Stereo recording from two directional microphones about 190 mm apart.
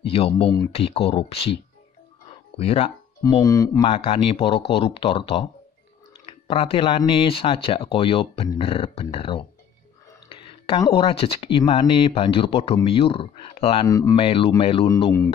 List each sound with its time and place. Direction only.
0.1 s speech: 30° left (ahead or behind)
3.2 s speech: 20° left (ahead or behind)
13.8 s speech: 20° left (ahead or behind)
14.1 s speech: 30° left (ahead or behind)